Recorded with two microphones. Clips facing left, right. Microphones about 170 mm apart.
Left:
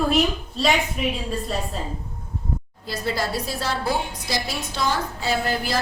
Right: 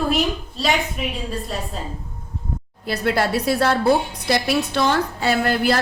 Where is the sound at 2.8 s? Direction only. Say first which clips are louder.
Right 6 dB; 65° right (ahead or behind).